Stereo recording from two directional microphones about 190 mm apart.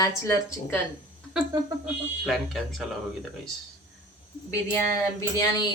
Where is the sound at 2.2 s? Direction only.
Centre (ahead or behind).